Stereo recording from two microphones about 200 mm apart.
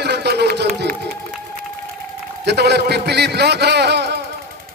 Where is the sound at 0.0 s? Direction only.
55° right (ahead or behind).